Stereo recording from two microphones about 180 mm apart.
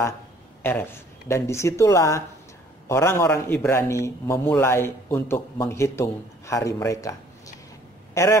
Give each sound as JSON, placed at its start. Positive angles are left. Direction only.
{"t": 0.6, "sound": "a man's voice", "side_deg": 10}